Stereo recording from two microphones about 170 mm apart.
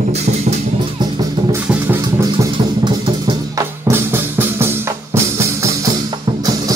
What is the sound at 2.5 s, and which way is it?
Music, 30° right (ahead or behind).